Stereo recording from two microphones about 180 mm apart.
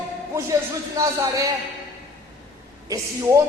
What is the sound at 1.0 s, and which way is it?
Speech, 20° right (ahead or behind).